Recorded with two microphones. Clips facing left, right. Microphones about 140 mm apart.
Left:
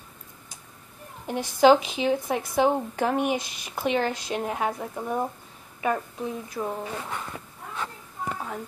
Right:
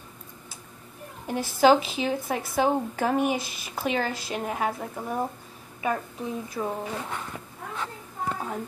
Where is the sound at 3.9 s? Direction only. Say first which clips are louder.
Left 2 dB; 5° right (ahead or behind).